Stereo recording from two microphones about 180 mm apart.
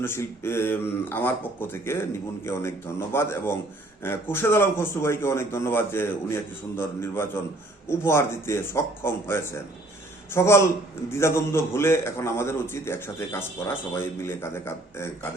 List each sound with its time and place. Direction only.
0.0 s a man's voice: 15° left (ahead or behind)